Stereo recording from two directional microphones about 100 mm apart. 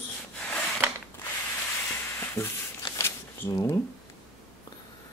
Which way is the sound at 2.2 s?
25° left (ahead or behind).